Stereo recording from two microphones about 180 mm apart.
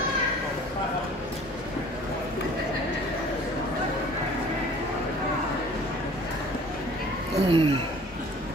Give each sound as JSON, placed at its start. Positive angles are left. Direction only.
{"t": 7.3, "sound": "speech", "side_deg": -30}